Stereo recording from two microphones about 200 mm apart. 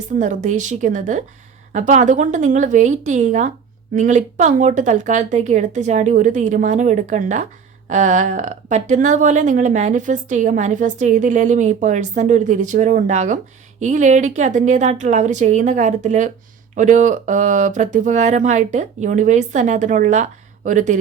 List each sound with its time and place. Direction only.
0.2 s speech: 40° right (ahead or behind)